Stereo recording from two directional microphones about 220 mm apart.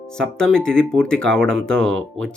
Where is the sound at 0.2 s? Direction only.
5° left (ahead or behind).